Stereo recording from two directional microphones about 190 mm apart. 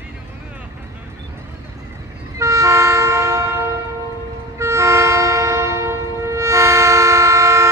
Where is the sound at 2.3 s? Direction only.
15° right (ahead or behind).